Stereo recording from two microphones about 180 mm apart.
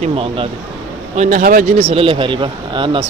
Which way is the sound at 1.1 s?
45° right (ahead or behind).